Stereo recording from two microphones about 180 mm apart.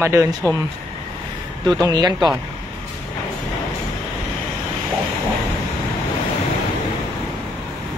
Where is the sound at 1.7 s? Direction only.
20° right (ahead or behind).